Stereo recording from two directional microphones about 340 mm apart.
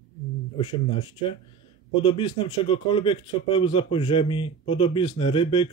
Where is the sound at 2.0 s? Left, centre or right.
Centre.